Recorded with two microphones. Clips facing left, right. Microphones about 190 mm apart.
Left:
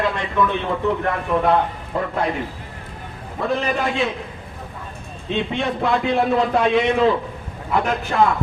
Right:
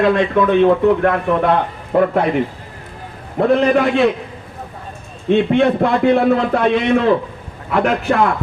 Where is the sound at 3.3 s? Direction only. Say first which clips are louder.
Right 9 dB; 60° right (ahead or behind).